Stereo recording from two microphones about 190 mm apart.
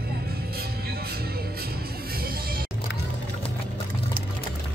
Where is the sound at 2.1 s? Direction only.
50° right (ahead or behind).